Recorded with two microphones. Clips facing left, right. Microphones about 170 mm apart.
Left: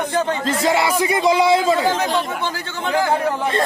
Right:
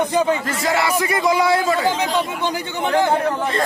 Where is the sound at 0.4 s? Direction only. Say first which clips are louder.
Left 2 dB; 20° left (ahead or behind).